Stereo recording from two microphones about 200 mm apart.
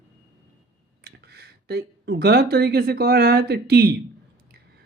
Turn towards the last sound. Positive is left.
turn(degrees=-55)  # may be behind; listen again after turning